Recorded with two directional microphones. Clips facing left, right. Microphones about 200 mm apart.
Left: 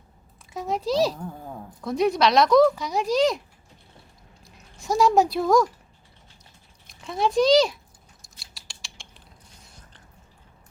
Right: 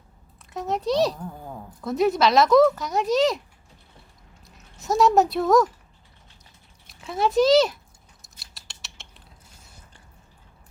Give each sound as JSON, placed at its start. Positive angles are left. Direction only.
{"t": 0.5, "sound": "speech", "side_deg": 0}
{"t": 4.4, "sound": "speech", "side_deg": 0}
{"t": 6.8, "sound": "a child's voice", "side_deg": 0}
{"t": 8.5, "sound": "scissors", "side_deg": 0}